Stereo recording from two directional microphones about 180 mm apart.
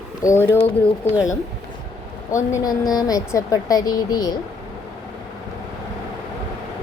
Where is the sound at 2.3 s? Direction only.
15° left (ahead or behind).